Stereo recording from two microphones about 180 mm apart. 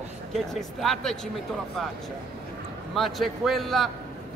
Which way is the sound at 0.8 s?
Centre (ahead or behind).